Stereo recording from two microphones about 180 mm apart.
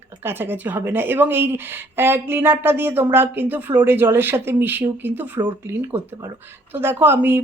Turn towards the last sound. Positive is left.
turn(degrees=-10)  # may be behind; listen again after turning